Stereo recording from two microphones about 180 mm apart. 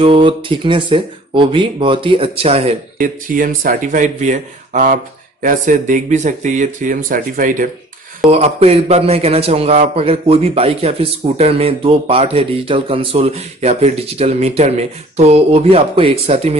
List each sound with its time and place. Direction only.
0.0 s speech: 30° right (ahead or behind)
3.0 s speech: 50° right (ahead or behind)
8.3 s a man's voice: 35° right (ahead or behind)